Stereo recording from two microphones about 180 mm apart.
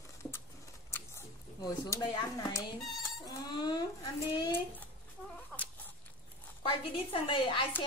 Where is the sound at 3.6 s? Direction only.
25° left (ahead or behind).